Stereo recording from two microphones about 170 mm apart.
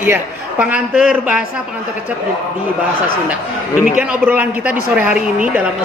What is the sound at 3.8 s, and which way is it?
Speech, 10° right (ahead or behind).